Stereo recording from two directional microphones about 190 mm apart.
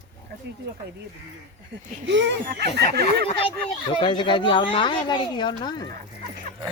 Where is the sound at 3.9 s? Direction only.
25° left (ahead or behind).